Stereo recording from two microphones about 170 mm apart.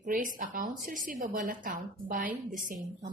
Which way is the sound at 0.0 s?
55° right (ahead or behind).